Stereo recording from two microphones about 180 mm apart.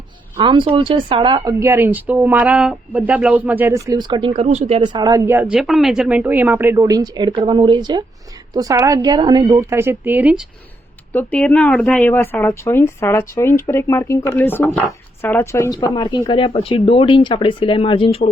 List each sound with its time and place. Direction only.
0.3 s speech: 25° right (ahead or behind)
4.8 s a woman's voice: 25° right (ahead or behind); by 10.4 s 10° right (ahead or behind)
11.1 s speech: 10° left (ahead or behind); by 18.2 s 30° left (ahead or behind)